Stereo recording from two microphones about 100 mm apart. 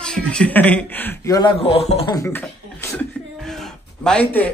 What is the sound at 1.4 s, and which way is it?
Speech, 70° left (ahead or behind).